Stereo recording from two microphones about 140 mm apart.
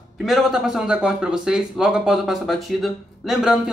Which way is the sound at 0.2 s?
Centre (ahead or behind).